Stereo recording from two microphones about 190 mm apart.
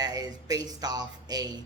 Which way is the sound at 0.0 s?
20° right (ahead or behind).